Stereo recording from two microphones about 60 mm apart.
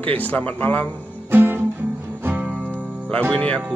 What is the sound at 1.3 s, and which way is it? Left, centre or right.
Guitar, right.